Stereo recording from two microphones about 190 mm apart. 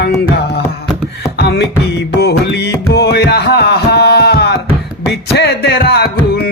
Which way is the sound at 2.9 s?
60° left (ahead or behind).